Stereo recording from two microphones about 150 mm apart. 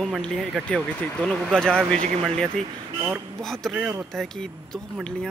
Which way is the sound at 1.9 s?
50° right (ahead or behind).